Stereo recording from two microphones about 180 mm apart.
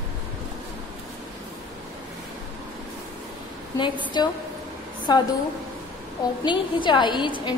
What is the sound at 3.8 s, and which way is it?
A woman's voice, 25° left (ahead or behind).